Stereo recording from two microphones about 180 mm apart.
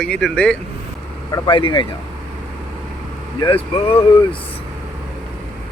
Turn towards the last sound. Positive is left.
turn(degrees=30)  # may be behind; listen again after turning